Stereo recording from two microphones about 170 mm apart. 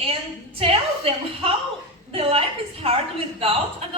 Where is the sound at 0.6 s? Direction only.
35° right (ahead or behind).